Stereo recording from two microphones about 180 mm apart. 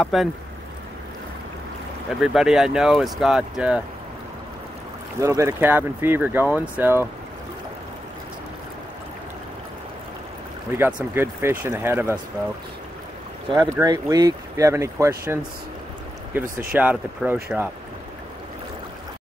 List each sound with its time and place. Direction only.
0.0 s speech: centre (ahead or behind)
2.0 s speech: centre (ahead or behind)
5.2 s speech: 15° right (ahead or behind)
10.7 s speech: 10° right (ahead or behind)
13.6 s speech: 15° right (ahead or behind)
16.7 s speech: 5° right (ahead or behind)